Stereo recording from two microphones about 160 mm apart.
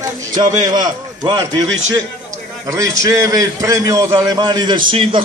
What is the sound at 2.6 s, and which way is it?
A man's voice, 20° right (ahead or behind).